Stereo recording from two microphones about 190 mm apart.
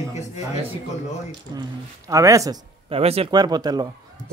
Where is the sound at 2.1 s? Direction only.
15° right (ahead or behind).